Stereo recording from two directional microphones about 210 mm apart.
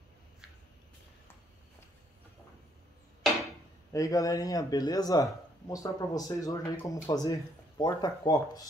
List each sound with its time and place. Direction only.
3.9 s speech: 15° left (ahead or behind)